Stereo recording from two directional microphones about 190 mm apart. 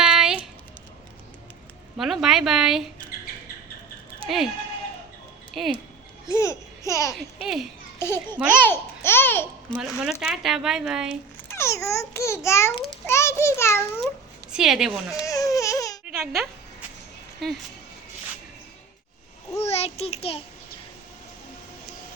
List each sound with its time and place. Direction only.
0.0 s a sound: 5° right (ahead or behind)
2.0 s speech: centre (ahead or behind)
5.6 s speech: centre (ahead or behind)
6.2 s babbling: 15° left (ahead or behind)
7.4 s speech: centre (ahead or behind)
7.9 s a child's voice: 10° left (ahead or behind)
10.0 s speech: 5° right (ahead or behind)
11.4 s a child's voice: 15° left (ahead or behind)
13.1 s a sound: 15° left (ahead or behind)
14.5 s speech: 5° right (ahead or behind)
15.2 s baby cry: 15° left (ahead or behind)
16.0 s a sound: centre (ahead or behind)
17.4 s speech: centre (ahead or behind)
19.5 s a child's voice: 35° left (ahead or behind)